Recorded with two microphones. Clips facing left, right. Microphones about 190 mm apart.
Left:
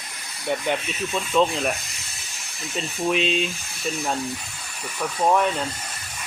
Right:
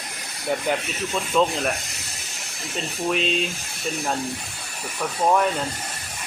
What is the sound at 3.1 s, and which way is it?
Speech, centre (ahead or behind).